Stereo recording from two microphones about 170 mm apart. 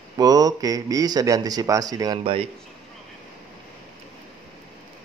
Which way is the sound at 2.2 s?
30° right (ahead or behind).